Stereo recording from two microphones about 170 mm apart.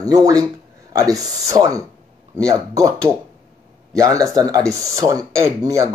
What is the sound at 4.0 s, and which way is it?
Speech, 20° right (ahead or behind).